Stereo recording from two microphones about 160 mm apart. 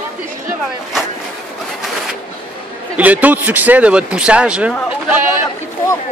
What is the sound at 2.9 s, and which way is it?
Speech, 10° right (ahead or behind).